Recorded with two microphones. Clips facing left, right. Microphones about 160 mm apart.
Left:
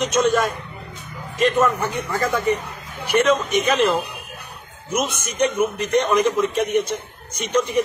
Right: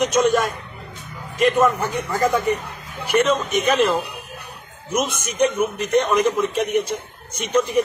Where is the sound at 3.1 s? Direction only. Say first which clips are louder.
Left 1 dB; 5° left (ahead or behind).